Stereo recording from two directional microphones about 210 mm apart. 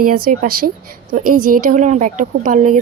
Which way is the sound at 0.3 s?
40° right (ahead or behind).